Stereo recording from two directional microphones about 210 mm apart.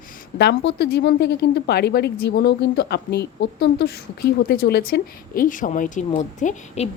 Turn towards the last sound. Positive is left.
turn(degrees=35)  # may be behind; listen again after turning